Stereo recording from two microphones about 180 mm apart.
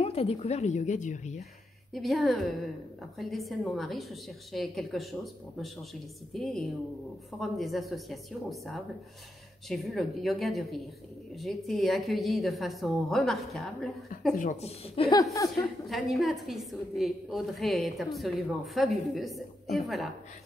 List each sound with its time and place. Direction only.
0.0 s speech: 35° left (ahead or behind)
2.0 s a woman's voice: centre (ahead or behind)
14.3 s a woman's voice: 50° left (ahead or behind)
14.6 s speech: 30° left (ahead or behind)
15.9 s a woman's voice: centre (ahead or behind)